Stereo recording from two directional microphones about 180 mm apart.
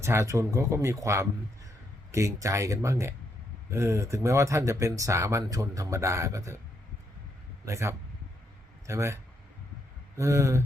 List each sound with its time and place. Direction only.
0.0 s speech: 15° right (ahead or behind)
7.6 s speech: 15° right (ahead or behind)
10.2 s speech: 15° right (ahead or behind)